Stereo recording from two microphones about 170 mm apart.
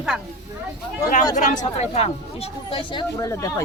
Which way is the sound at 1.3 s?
45° left (ahead or behind).